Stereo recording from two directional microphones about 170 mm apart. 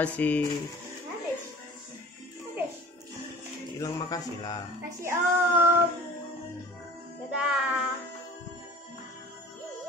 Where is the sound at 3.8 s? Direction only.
20° left (ahead or behind).